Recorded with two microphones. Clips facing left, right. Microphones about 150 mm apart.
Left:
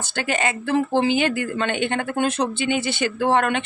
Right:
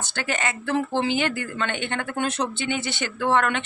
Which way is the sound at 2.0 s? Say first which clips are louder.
Left 4 dB; 35° left (ahead or behind).